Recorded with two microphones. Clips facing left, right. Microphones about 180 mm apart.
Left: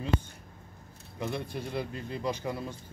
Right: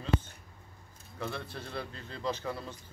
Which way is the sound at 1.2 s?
15° left (ahead or behind).